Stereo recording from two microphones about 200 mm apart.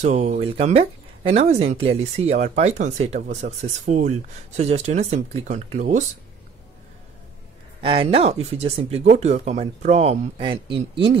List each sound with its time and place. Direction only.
0.0 s speech: 35° right (ahead or behind)
7.8 s speech: 25° right (ahead or behind)